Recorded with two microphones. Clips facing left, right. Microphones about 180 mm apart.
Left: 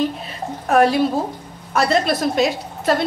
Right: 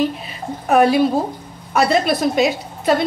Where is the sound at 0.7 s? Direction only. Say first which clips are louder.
Right 2 dB; centre (ahead or behind).